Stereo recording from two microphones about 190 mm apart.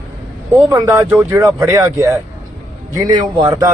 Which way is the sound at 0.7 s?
15° right (ahead or behind).